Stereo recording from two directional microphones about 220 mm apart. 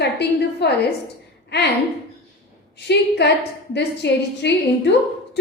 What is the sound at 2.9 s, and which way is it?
A woman's voice, 50° left (ahead or behind).